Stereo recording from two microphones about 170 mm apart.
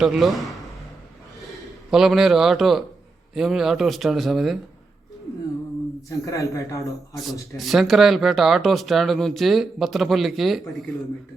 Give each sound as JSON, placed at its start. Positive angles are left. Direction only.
{"t": 0.0, "sound": "speech", "side_deg": 0}
{"t": 1.9, "sound": "speech", "side_deg": -5}
{"t": 6.1, "sound": "speech", "side_deg": 20}
{"t": 7.1, "sound": "speech", "side_deg": 0}